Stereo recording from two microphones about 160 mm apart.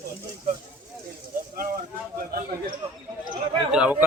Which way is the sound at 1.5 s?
65° right (ahead or behind).